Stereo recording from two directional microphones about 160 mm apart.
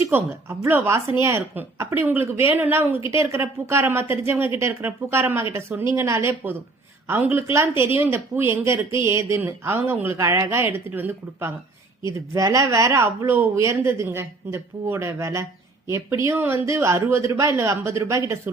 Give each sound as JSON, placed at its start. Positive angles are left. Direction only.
{"t": 0.1, "sound": "speech", "side_deg": -15}